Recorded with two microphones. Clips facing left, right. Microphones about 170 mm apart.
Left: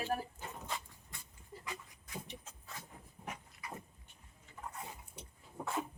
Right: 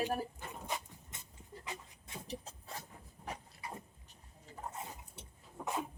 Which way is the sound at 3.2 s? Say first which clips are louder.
Right 2 dB; 30° right (ahead or behind).